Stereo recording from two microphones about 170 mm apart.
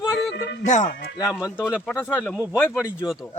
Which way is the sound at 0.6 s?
45° left (ahead or behind).